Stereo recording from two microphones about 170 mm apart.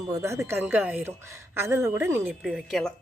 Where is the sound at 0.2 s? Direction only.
15° right (ahead or behind).